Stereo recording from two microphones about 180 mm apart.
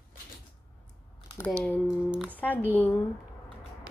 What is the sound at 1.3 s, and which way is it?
Typing, 15° left (ahead or behind).